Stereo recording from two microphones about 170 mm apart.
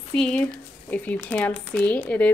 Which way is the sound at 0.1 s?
5° left (ahead or behind).